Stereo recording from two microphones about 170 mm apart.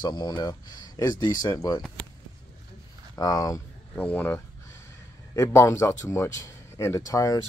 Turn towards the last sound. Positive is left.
turn(degrees=20)  # may be behind; listen again after turning